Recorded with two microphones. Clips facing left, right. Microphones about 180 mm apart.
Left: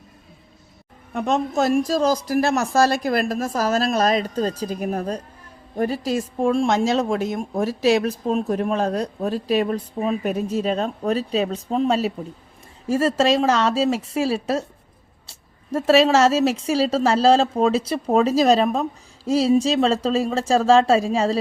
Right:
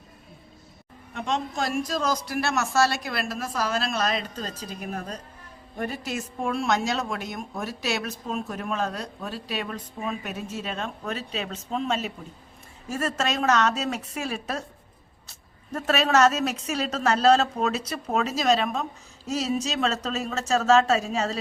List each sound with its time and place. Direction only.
1.1 s a woman's voice: 45° left (ahead or behind)
1.9 s a woman's voice: 30° left (ahead or behind)